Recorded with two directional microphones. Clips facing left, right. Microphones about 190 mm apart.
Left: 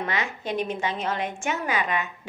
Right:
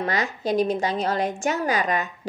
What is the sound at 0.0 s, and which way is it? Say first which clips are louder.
A woman's voice: right 4 dB; 40° right (ahead or behind).